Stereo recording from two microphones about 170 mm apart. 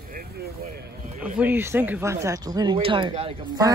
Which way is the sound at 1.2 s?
10° right (ahead or behind).